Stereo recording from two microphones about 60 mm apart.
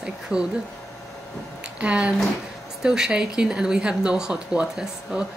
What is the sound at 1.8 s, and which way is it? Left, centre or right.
Speech, centre.